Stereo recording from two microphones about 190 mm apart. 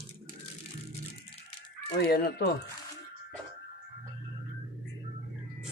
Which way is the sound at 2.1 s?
55° left (ahead or behind).